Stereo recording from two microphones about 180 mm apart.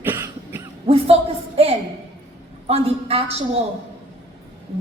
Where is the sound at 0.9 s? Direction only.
35° right (ahead or behind).